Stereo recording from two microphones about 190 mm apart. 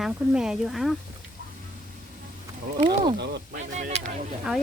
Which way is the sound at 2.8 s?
25° right (ahead or behind).